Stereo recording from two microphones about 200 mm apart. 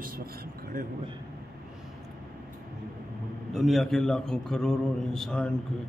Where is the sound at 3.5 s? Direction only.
Centre (ahead or behind).